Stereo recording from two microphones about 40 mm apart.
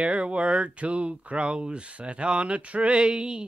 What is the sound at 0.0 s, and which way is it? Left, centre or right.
Speech, right.